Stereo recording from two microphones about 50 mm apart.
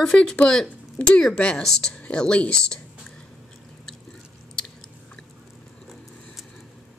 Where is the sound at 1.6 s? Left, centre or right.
Centre.